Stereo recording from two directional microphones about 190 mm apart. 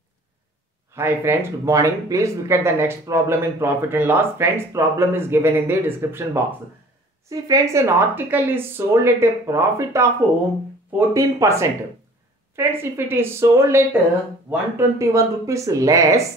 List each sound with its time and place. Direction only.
0.9 s speech: 15° right (ahead or behind)